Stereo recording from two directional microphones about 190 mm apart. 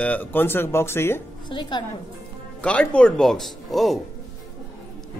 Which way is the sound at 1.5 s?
25° left (ahead or behind).